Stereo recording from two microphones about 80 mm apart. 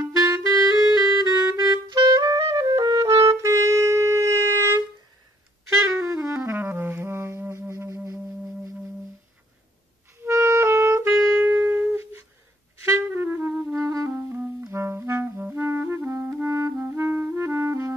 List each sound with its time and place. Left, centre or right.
0.0 s clarinet: right
1.2 s music: left
1.5 s clarinet: right
2.2 s music: right
5.9 s music: right
10.2 s clarinet: right
12.8 s music: right
13.7 s clarinet: right
14.1 s clarinet: right